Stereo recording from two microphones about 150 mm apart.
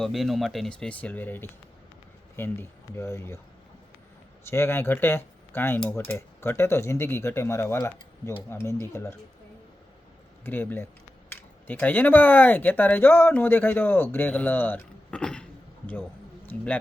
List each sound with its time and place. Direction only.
0.0 s speech: centre (ahead or behind); by 3.3 s 15° left (ahead or behind)
4.4 s speech: 15° left (ahead or behind)
10.4 s speech: 15° left (ahead or behind)